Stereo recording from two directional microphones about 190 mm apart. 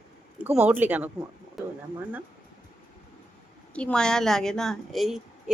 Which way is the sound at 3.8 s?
5° left (ahead or behind).